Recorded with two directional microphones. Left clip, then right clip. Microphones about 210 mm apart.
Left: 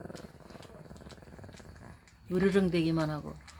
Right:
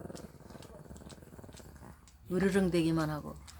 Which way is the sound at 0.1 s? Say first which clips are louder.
Left 1 dB; 25° right (ahead or behind).